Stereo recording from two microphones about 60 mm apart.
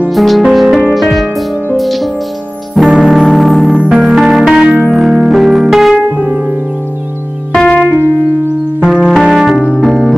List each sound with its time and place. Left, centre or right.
0.1 s music: centre
3.7 s music: centre
4.6 s music: centre
4.9 s music: centre
6.1 s music: right
7.6 s keyboard: left
8.8 s music: centre
9.1 s music: centre